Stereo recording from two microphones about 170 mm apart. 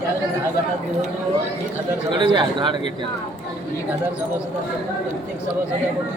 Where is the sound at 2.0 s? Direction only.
25° right (ahead or behind).